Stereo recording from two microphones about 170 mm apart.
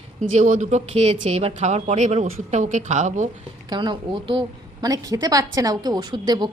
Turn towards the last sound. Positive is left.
turn(degrees=-25)  # may be behind; listen again after turning